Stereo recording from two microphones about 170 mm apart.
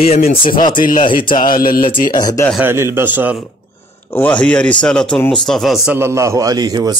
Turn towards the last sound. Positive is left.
turn(degrees=-25)  # may be behind; listen again after turning